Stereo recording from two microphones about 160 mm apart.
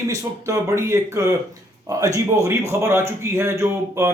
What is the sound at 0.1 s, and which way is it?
A man's voice, 20° right (ahead or behind).